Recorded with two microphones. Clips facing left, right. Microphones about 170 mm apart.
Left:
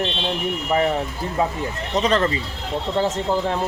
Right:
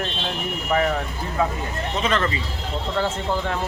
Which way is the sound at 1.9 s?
40° left (ahead or behind).